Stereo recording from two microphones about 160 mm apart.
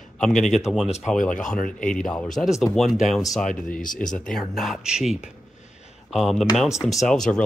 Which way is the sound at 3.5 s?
55° left (ahead or behind).